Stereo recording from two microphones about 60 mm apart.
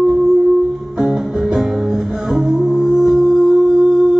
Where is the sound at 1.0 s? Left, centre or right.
Centre.